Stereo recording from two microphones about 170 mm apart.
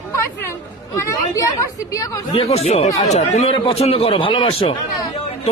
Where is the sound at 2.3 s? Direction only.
35° left (ahead or behind).